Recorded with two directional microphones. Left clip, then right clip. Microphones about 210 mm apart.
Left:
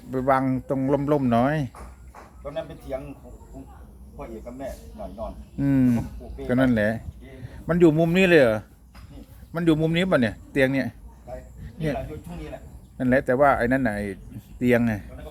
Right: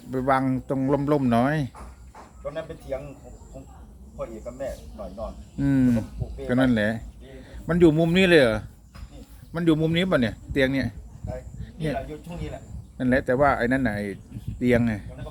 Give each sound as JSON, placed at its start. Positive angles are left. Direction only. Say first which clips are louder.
{"t": 0.1, "sound": "speech", "louder": "left 1 dB", "side_deg": 0}
{"t": 2.5, "sound": "speech", "louder": "even", "side_deg": -15}
{"t": 5.5, "sound": "a man's voice", "louder": "even", "side_deg": 5}
{"t": 13.0, "sound": "a man's voice", "louder": "left 2 dB", "side_deg": 5}